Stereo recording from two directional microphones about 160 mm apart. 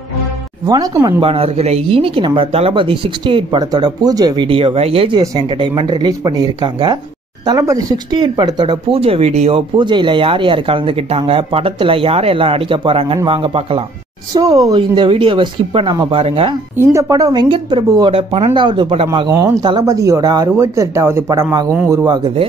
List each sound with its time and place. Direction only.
0.7 s speech: 25° right (ahead or behind)
1.2 s speech: 35° right (ahead or behind)
5.2 s speech: 25° right (ahead or behind)
14.3 s speech: 20° right (ahead or behind)
16.7 s speech: 15° right (ahead or behind); by 19.0 s 35° right (ahead or behind)
19.3 s speech: 20° right (ahead or behind)